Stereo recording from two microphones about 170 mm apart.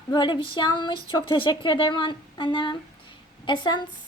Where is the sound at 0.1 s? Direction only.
25° left (ahead or behind).